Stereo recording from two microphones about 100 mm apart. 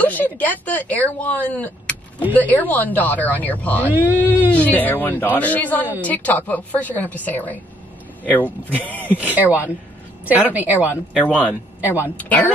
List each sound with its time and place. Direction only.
0.0 s speech: 15° left (ahead or behind)
3.9 s speech: 20° right (ahead or behind)
4.5 s speech: 15° left (ahead or behind)
10.5 s speech: 15° right (ahead or behind)
11.2 s speech: 15° left (ahead or behind)
11.8 s a woman's voice: 20° right (ahead or behind)
12.2 s speech: 15° left (ahead or behind)